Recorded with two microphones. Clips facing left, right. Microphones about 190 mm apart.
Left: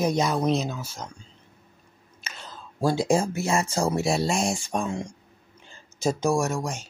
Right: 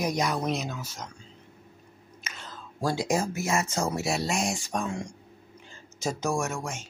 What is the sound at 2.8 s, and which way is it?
Speech, 25° left (ahead or behind).